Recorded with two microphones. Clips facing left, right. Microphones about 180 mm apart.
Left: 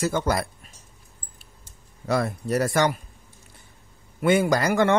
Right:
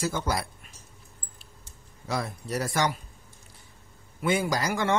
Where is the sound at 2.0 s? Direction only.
60° left (ahead or behind).